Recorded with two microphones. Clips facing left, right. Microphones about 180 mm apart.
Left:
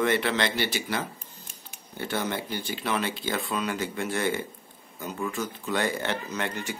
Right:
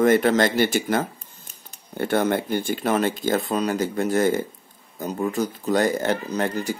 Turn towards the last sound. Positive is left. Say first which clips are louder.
# right 7 dB
turn(degrees=-35)  # may be behind; listen again after turning